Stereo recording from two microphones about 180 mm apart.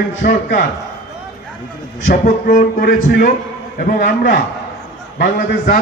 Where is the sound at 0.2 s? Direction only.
50° left (ahead or behind).